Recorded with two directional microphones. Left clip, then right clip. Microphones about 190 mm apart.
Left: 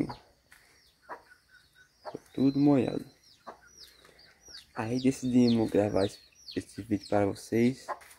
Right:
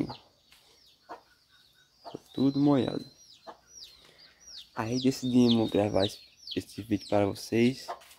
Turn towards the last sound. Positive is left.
turn(degrees=-5)  # may be behind; listen again after turning